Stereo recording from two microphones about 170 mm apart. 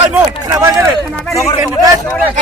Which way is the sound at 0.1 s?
15° right (ahead or behind).